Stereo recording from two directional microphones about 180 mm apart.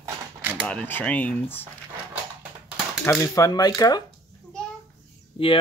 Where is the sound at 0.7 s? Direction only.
10° left (ahead or behind).